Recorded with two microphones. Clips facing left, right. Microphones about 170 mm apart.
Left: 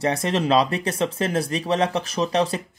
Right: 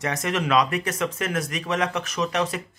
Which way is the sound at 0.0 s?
30° left (ahead or behind).